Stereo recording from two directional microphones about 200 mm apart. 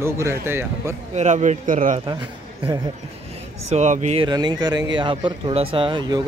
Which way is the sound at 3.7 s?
35° right (ahead or behind).